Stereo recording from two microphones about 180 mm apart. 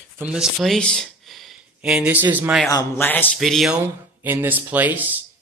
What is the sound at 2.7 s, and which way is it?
Speech, 15° left (ahead or behind).